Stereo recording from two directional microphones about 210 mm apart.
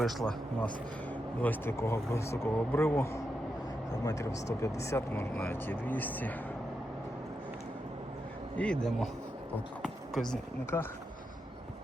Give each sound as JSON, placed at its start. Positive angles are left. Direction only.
{"t": 0.0, "sound": "speech", "side_deg": 0}
{"t": 8.5, "sound": "speech", "side_deg": 5}
{"t": 9.8, "sound": "a sound", "side_deg": 0}
{"t": 10.7, "sound": "speech", "side_deg": 10}